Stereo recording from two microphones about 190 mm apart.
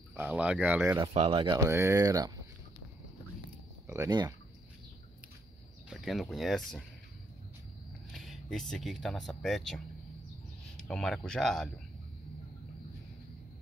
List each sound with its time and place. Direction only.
0.1 s speech: 10° right (ahead or behind)
1.1 s speech: 30° right (ahead or behind)
1.6 s speech: 15° right (ahead or behind)
3.8 s speech: 15° right (ahead or behind)
5.9 s speech: centre (ahead or behind)
8.1 s speech: centre (ahead or behind)